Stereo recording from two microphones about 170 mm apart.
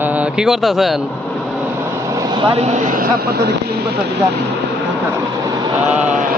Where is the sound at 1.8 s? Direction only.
20° right (ahead or behind); by 4.0 s 70° right (ahead or behind).